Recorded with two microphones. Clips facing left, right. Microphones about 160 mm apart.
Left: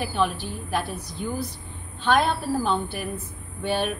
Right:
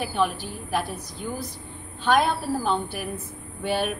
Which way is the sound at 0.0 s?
5° right (ahead or behind).